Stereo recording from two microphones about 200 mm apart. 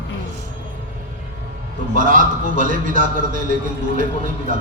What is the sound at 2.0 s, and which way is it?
A man's voice, 40° right (ahead or behind).